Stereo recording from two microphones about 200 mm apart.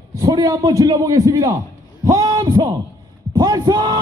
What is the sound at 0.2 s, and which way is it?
A man's voice, 20° right (ahead or behind).